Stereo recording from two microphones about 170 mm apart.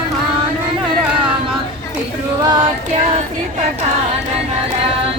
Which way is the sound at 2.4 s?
25° right (ahead or behind).